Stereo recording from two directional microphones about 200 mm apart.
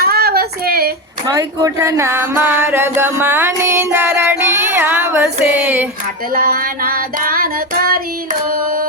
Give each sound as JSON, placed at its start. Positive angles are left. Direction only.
{"t": 0.0, "sound": "female singing", "side_deg": -50}
{"t": 1.3, "sound": "a sound", "side_deg": -15}
{"t": 6.3, "sound": "child singing", "side_deg": -45}